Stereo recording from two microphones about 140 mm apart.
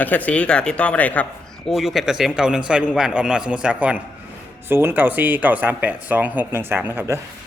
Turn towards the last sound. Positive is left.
turn(degrees=-15)  # may be behind; listen again after turning